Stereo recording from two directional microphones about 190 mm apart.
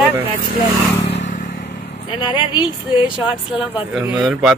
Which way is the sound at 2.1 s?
25° left (ahead or behind).